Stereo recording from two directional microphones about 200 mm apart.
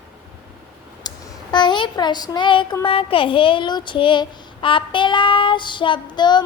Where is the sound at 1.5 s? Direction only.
20° left (ahead or behind).